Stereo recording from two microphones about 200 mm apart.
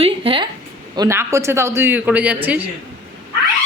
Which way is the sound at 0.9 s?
15° right (ahead or behind).